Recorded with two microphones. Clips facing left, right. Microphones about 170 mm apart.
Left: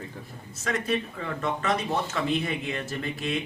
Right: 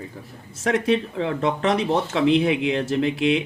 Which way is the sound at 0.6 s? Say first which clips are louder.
Right 7 dB; 85° right.